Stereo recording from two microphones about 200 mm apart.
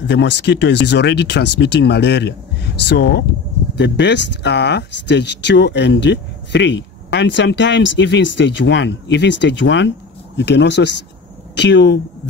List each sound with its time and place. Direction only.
0.0 s speech: 60° left (ahead or behind)